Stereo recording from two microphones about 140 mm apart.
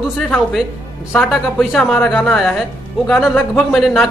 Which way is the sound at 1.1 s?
Centre (ahead or behind).